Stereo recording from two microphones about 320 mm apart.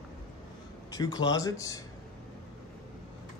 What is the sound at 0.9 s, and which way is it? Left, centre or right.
Speech, centre.